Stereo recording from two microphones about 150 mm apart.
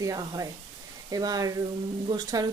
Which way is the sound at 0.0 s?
20° right (ahead or behind).